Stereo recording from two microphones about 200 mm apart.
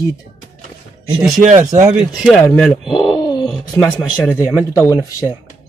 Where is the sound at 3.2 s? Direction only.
20° left (ahead or behind).